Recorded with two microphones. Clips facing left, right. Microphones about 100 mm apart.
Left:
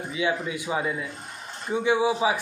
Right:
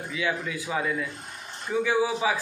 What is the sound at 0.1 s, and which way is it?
A man's voice, 25° left (ahead or behind).